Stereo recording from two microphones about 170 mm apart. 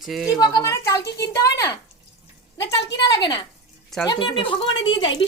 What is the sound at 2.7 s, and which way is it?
Speech, 90° left.